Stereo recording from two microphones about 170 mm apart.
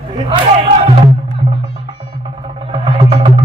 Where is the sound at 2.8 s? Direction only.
30° right (ahead or behind).